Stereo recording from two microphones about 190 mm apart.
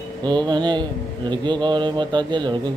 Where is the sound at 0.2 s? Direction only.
25° right (ahead or behind).